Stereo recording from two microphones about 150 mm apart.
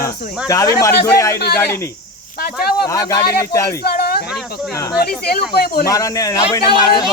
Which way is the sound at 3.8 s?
90° left.